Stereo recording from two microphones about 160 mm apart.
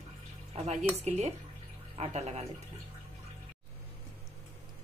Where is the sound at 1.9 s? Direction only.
45° right (ahead or behind).